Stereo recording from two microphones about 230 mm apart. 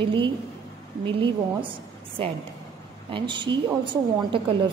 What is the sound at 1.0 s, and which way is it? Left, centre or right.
Speech, right.